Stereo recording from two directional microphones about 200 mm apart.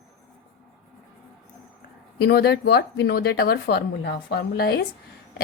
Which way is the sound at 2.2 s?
55° left (ahead or behind).